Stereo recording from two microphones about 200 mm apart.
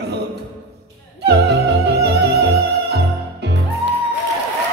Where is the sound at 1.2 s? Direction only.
55° right (ahead or behind).